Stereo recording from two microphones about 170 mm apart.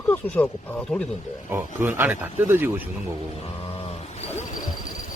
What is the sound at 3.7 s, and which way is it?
Vehicle, 35° left (ahead or behind).